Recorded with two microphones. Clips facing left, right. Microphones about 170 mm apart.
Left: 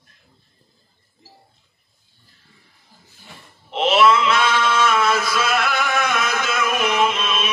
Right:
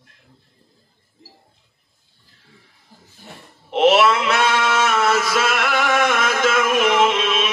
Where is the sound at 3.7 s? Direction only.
65° right (ahead or behind).